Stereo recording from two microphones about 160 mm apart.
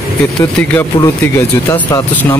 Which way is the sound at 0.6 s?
10° left (ahead or behind).